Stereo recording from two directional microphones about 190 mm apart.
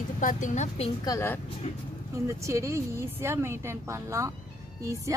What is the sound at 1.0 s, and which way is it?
Speech, 15° left (ahead or behind).